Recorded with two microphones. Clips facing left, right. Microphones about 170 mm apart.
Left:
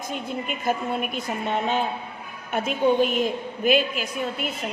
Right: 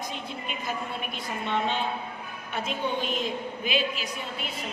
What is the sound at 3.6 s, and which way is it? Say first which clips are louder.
Speech: left 9 dB; 50° left (ahead or behind).